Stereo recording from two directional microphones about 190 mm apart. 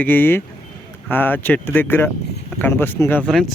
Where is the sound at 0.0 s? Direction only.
10° left (ahead or behind).